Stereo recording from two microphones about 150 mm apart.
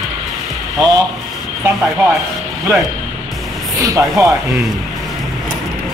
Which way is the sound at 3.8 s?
20° right (ahead or behind).